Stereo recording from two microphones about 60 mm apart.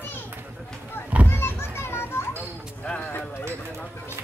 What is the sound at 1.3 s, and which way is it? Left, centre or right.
Children playing, left.